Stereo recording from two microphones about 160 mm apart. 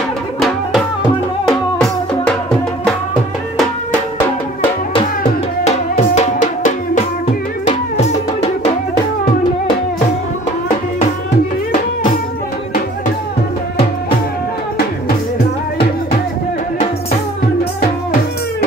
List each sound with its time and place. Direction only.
5.6 s music: 45° left (ahead or behind)